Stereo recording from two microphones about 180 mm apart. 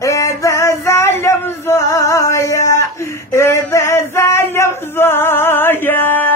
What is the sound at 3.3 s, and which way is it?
Male singing, 15° left (ahead or behind).